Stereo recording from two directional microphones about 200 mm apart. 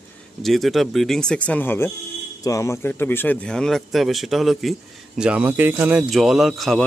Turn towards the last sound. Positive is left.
turn(degrees=0)  # may be behind; listen again after turning